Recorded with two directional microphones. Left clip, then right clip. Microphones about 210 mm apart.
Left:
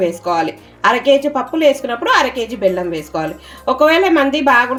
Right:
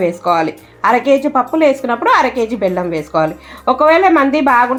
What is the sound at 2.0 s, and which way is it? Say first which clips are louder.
Speech: right 2 dB; 20° right (ahead or behind).